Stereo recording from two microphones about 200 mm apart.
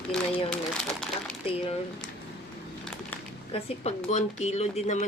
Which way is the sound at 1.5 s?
30° left (ahead or behind).